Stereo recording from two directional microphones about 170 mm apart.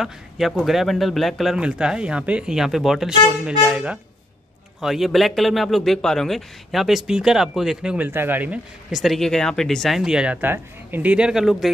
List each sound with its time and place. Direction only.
0.0 s a man's voice: centre (ahead or behind)